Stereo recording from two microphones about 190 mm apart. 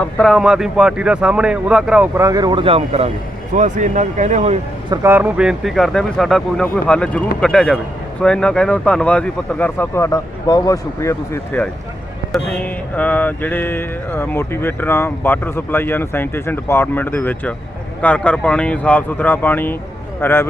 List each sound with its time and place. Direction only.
0.0 s speech: centre (ahead or behind); by 4.5 s 40° right (ahead or behind)
4.9 s speech: 10° right (ahead or behind)
8.2 s mantra: 5° left (ahead or behind)